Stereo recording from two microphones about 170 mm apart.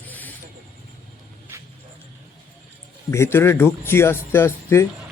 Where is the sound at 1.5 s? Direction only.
15° right (ahead or behind).